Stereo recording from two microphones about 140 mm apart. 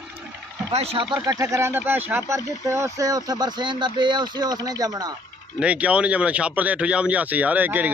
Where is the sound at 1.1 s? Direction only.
30° right (ahead or behind).